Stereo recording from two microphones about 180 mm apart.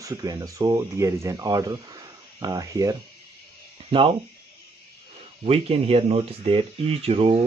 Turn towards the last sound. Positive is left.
turn(degrees=-35)  # may be behind; listen again after turning